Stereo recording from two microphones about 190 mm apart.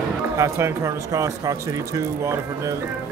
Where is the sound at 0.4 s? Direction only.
15° right (ahead or behind).